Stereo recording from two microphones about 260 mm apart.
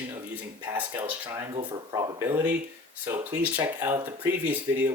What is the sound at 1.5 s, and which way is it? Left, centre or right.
Speech, centre.